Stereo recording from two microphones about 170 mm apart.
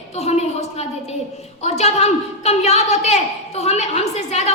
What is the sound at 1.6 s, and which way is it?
A woman's voice, 40° left (ahead or behind).